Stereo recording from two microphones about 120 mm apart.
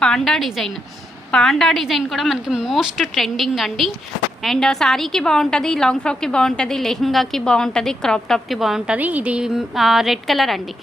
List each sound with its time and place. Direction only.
0.0 s a woman's voice: 5° left (ahead or behind)